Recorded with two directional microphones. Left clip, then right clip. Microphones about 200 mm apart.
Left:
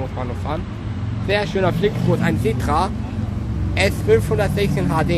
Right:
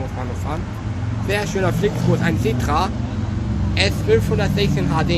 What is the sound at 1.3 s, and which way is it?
Speech, 10° left (ahead or behind).